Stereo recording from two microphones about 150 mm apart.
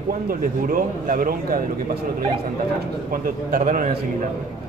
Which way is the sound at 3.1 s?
70° right (ahead or behind).